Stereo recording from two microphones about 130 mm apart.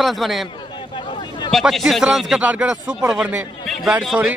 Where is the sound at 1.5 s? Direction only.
Centre (ahead or behind).